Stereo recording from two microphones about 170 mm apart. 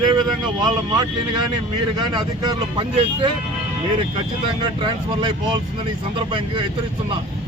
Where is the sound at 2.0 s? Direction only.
25° right (ahead or behind).